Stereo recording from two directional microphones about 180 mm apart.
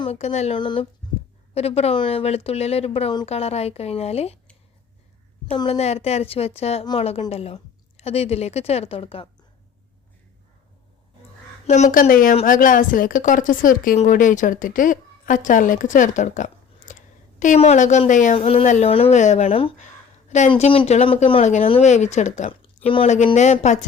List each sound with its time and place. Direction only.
0.0 s speech: 35° left (ahead or behind)
5.5 s speech: 35° left (ahead or behind)
11.6 s speech: 40° left (ahead or behind)